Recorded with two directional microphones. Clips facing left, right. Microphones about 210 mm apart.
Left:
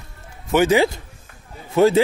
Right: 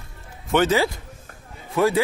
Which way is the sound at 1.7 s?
25° left (ahead or behind).